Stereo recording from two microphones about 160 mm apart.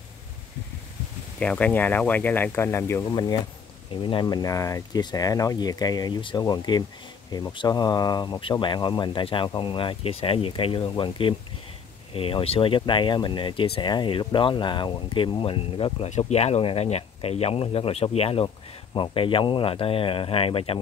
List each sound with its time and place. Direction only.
1.4 s speech: 10° left (ahead or behind); by 20.8 s 35° left (ahead or behind)